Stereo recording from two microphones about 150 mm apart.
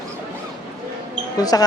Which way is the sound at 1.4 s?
25° left (ahead or behind).